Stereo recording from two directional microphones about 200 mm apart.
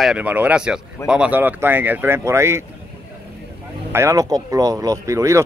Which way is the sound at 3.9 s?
15° right (ahead or behind).